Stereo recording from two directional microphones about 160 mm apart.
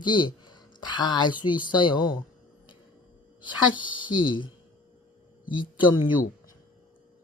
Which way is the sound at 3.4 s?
30° left (ahead or behind).